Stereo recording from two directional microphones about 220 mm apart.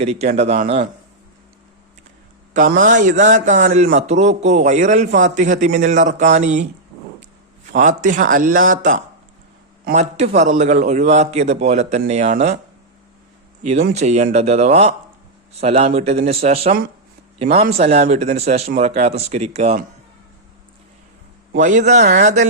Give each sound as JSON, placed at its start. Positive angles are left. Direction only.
{"t": 0.0, "sound": "a man's voice", "side_deg": -30}
{"t": 2.5, "sound": "a man's voice", "side_deg": -35}
{"t": 7.7, "sound": "a man's voice", "side_deg": -35}
{"t": 13.6, "sound": "a man's voice", "side_deg": -30}
{"t": 21.5, "sound": "a man's voice", "side_deg": -35}